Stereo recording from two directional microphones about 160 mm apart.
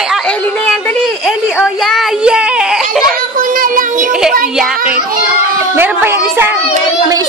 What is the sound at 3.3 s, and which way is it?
Child singing, 60° right (ahead or behind).